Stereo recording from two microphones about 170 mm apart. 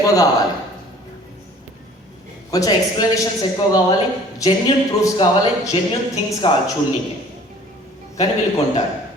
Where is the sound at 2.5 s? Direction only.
20° left (ahead or behind).